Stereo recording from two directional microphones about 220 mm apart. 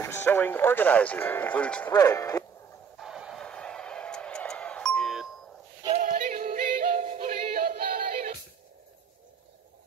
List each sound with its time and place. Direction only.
0.0 s speech: 10° left (ahead or behind)
1.9 s speech: 15° left (ahead or behind)
3.0 s a sound: centre (ahead or behind)
5.9 s music: 35° right (ahead or behind)